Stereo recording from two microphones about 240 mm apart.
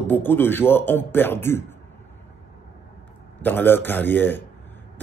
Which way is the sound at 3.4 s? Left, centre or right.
Centre.